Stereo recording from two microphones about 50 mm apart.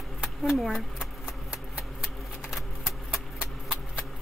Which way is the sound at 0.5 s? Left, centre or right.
Centre.